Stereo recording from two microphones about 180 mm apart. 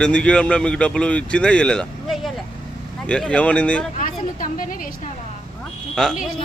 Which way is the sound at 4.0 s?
45° left (ahead or behind).